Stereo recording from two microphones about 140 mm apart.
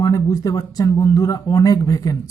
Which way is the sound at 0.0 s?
25° left (ahead or behind).